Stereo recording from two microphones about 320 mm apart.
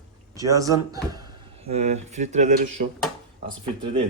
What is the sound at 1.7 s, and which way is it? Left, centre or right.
Speech, right.